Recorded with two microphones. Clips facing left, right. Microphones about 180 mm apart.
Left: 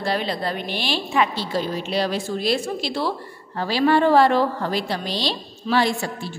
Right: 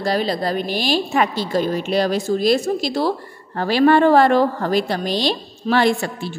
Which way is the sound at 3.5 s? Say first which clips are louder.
Right 4 dB; 55° right (ahead or behind).